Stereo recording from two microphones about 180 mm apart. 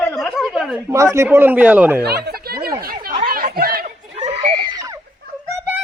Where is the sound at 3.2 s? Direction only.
55° right (ahead or behind).